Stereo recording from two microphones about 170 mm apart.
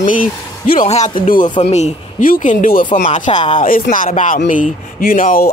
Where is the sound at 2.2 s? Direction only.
55° left (ahead or behind); by 3.6 s 40° left (ahead or behind).